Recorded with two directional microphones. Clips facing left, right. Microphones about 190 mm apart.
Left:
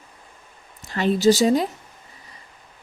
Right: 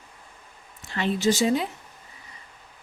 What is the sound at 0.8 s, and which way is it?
Speech, 40° left (ahead or behind).